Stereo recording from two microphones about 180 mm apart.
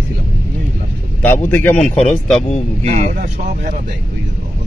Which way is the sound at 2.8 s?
40° right (ahead or behind).